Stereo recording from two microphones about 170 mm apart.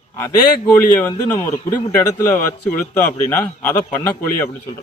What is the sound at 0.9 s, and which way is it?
A man's voice, 15° left (ahead or behind).